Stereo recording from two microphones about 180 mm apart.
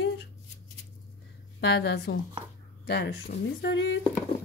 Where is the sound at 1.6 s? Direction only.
65° left (ahead or behind); by 3.9 s 80° left.